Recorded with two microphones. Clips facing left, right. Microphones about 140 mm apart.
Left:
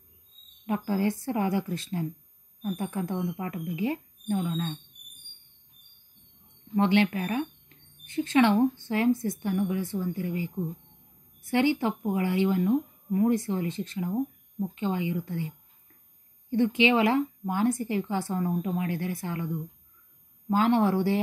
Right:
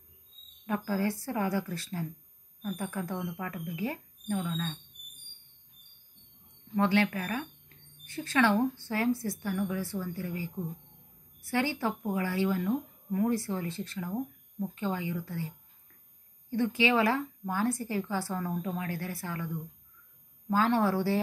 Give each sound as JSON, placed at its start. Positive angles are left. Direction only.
{"t": 0.7, "sound": "a woman's voice", "side_deg": 20}
{"t": 6.7, "sound": "a woman's voice", "side_deg": 20}